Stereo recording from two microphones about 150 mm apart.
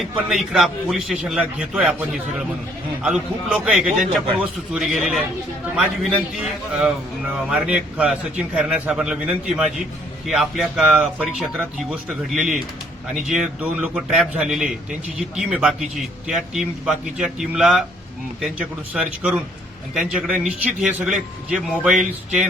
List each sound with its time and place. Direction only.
0.0 s a man's voice: centre (ahead or behind)